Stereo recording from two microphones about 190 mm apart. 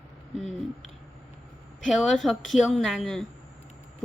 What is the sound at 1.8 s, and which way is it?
A woman's voice, centre (ahead or behind).